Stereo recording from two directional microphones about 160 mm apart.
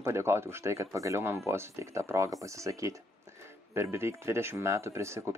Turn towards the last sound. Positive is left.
turn(degrees=-15)  # may be behind; listen again after turning